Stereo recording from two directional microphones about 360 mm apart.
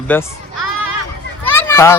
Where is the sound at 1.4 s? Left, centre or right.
Centre.